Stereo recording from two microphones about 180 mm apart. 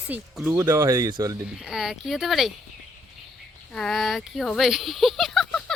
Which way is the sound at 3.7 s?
Centre (ahead or behind).